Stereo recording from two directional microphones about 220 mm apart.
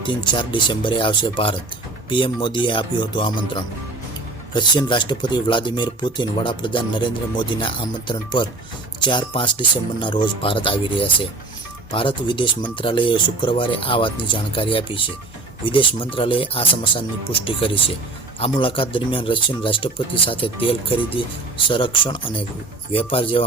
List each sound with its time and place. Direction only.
0.0 s speech: 20° left (ahead or behind)